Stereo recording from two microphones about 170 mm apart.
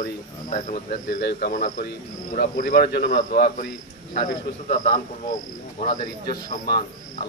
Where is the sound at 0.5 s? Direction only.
45° left (ahead or behind).